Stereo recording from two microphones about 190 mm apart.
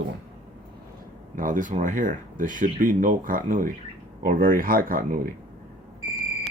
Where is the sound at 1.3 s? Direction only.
45° right (ahead or behind).